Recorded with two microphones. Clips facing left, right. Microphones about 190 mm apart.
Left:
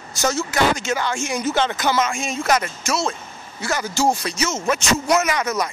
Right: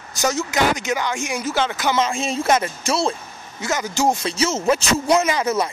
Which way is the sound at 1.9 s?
30° right (ahead or behind).